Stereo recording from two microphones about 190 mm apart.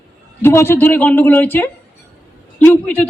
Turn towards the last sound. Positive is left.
turn(degrees=10)  # may be behind; listen again after turning